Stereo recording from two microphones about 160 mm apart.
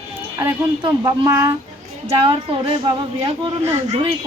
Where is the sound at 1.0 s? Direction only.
20° right (ahead or behind).